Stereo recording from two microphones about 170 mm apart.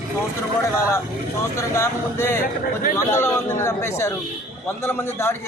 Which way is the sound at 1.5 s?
15° left (ahead or behind).